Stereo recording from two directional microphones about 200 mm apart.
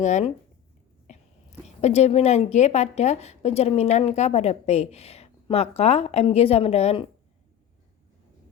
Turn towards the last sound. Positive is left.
turn(degrees=30)  # may be behind; listen again after turning